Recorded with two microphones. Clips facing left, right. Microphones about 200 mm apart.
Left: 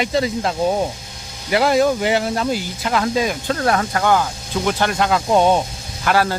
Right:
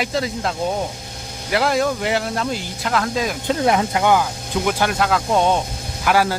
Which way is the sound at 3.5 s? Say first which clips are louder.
Right 3 dB; 15° right (ahead or behind).